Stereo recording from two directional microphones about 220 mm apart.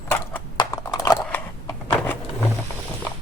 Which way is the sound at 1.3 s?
10° left (ahead or behind).